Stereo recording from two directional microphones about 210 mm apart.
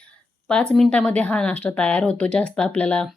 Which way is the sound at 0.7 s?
5° left (ahead or behind).